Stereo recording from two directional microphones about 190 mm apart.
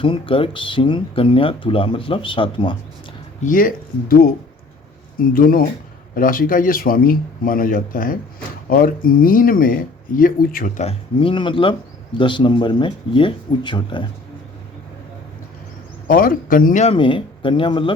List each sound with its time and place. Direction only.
0.0 s speech: 30° left (ahead or behind)
3.4 s speech: 45° left (ahead or behind)
10.8 s speech: 30° left (ahead or behind)
16.0 s speech: 50° left (ahead or behind)
16.9 s speech: 25° left (ahead or behind)